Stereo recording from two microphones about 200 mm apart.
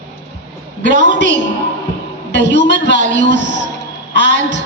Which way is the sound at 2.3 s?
60° left (ahead or behind).